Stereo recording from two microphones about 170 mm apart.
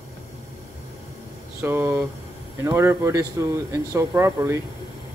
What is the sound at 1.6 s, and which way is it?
Speech, 10° right (ahead or behind).